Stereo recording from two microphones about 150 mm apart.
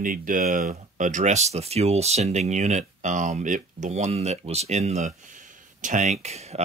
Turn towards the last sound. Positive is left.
turn(degrees=-45)  # may be behind; listen again after turning